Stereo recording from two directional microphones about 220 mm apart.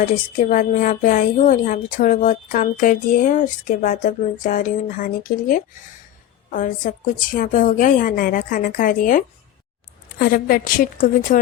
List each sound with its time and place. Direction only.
0.0 s a woman's voice: 35° left (ahead or behind)